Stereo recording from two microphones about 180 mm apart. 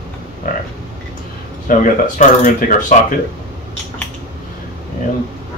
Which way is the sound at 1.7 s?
50° left (ahead or behind).